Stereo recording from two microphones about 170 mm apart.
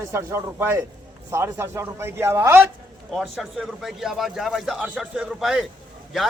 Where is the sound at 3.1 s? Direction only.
Centre (ahead or behind).